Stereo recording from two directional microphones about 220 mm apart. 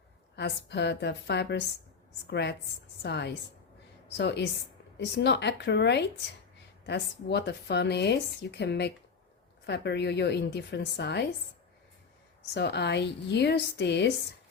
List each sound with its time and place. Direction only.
0.3 s a woman's voice: 50° left (ahead or behind)
12.5 s a woman's voice: 50° left (ahead or behind)